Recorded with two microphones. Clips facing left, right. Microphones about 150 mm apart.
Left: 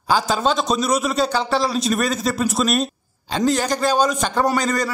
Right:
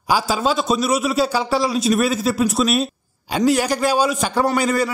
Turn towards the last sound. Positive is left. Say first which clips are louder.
# right 1 dB
turn(degrees=-10)  # may be behind; listen again after turning